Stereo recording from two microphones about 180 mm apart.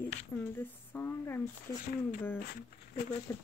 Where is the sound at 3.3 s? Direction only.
15° left (ahead or behind).